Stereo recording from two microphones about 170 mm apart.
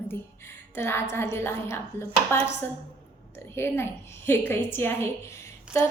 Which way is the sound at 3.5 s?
15° left (ahead or behind).